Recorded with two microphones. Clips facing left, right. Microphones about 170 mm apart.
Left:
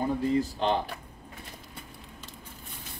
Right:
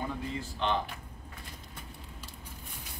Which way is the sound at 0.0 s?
40° left (ahead or behind).